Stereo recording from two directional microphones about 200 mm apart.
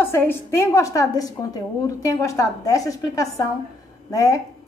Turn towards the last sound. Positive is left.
turn(degrees=15)  # may be behind; listen again after turning